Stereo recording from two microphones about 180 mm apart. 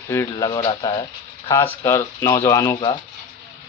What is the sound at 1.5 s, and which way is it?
Speech, 15° left (ahead or behind).